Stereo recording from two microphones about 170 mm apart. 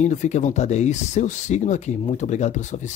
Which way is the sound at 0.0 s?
45° left (ahead or behind).